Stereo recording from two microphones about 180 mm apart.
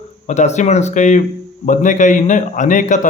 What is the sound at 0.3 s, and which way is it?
A man's voice, 40° left (ahead or behind).